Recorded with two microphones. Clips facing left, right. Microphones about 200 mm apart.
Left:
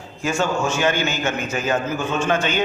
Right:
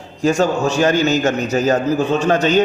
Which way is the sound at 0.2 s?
40° right (ahead or behind).